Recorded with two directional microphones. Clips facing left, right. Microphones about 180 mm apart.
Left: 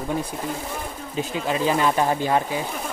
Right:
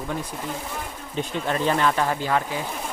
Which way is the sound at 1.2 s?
5° left (ahead or behind).